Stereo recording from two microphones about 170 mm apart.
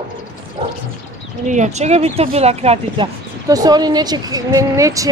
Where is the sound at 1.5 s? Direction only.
45° right (ahead or behind).